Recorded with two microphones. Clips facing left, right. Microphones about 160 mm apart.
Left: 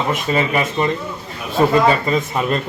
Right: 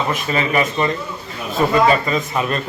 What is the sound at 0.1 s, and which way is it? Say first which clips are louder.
Speech: left 1 dB; 20° left (ahead or behind).